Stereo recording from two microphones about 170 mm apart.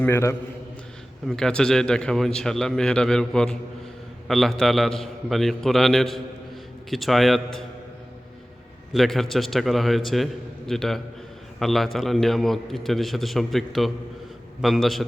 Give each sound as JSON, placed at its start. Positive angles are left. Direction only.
{"t": 0.0, "sound": "a man's voice", "side_deg": 15}
{"t": 1.3, "sound": "a man's voice", "side_deg": 5}
{"t": 8.9, "sound": "a man's voice", "side_deg": 0}